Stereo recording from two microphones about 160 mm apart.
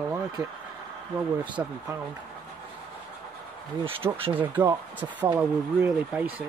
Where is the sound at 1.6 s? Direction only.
15° right (ahead or behind).